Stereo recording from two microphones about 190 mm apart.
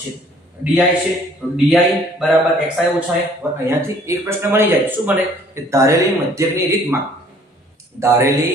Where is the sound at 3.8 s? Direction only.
15° right (ahead or behind).